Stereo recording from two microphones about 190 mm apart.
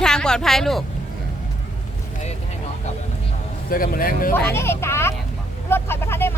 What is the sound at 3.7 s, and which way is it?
Speech, 50° left (ahead or behind).